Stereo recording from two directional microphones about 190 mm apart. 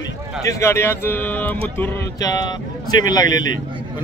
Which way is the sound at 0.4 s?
15° left (ahead or behind).